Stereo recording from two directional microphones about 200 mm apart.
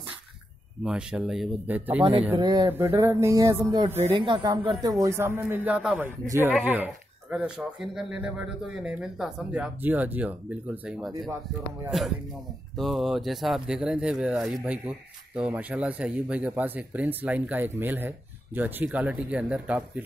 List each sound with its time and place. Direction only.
0.8 s speech: 5° right (ahead or behind)
2.3 s speech: 20° right (ahead or behind); by 11.1 s 5° right (ahead or behind)
12.7 s speech: centre (ahead or behind)